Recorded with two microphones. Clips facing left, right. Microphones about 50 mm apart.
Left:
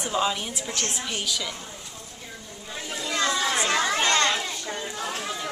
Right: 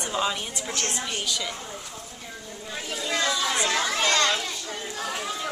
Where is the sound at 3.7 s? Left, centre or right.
Left.